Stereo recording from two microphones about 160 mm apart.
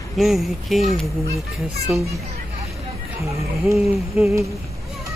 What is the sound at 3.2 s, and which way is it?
Speech, 20° right (ahead or behind).